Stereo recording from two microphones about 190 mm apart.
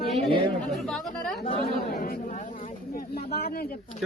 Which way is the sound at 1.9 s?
50° left (ahead or behind).